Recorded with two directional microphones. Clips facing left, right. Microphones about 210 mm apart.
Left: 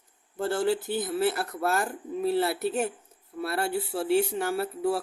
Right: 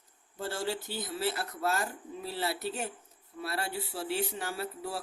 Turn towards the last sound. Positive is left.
turn(degrees=55)  # may be behind; listen again after turning